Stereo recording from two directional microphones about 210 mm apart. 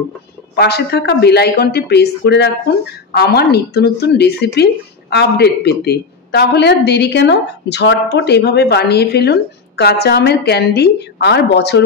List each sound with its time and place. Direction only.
0.6 s a woman's voice: 50° left (ahead or behind)